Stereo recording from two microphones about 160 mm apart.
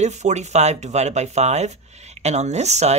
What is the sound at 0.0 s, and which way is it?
Speech, 45° right (ahead or behind).